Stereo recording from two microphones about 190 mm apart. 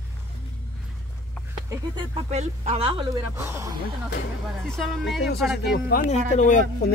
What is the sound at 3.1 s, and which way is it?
Speech, 15° right (ahead or behind).